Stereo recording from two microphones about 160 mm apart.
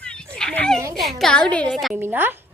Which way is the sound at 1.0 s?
Centre (ahead or behind).